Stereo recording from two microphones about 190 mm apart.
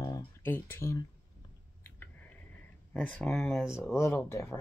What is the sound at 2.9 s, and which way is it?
Speech, 5° left (ahead or behind).